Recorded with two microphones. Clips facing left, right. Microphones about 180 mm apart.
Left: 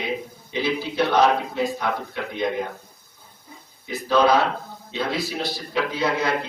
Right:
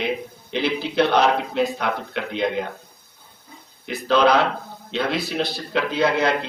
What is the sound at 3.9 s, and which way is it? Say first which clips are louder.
Speech: right 1 dB; 75° right (ahead or behind).